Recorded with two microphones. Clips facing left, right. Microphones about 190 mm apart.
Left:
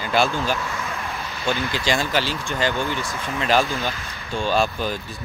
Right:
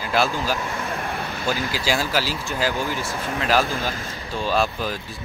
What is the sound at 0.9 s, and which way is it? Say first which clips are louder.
Vehicle: right 3 dB; 55° right (ahead or behind).